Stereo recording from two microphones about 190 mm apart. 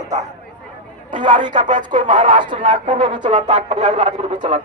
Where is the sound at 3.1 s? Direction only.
25° right (ahead or behind).